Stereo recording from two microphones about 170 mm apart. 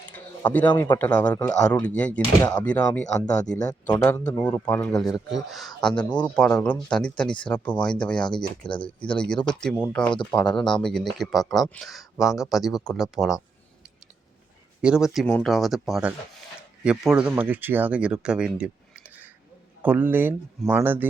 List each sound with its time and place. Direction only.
0.1 s a sound: 10° left (ahead or behind)
0.9 s speech: 10° left (ahead or behind)
2.4 s speech: 20° left (ahead or behind)
2.6 s speech: 10° left (ahead or behind)
3.6 s speech: 20° left (ahead or behind)
3.9 s speech: 10° left (ahead or behind)
5.0 s speech: centre (ahead or behind)
14.8 s speech: 5° right (ahead or behind)